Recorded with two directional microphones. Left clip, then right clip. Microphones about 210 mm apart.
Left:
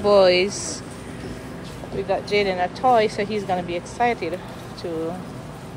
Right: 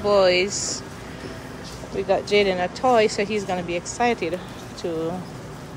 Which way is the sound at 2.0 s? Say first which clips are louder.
Right 2 dB; 20° right (ahead or behind).